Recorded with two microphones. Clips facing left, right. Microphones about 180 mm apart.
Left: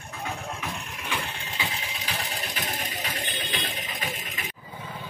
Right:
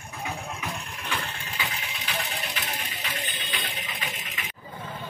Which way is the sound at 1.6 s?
35° left (ahead or behind).